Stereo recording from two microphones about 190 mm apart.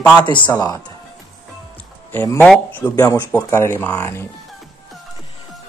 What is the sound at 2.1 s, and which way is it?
Speech, 10° left (ahead or behind).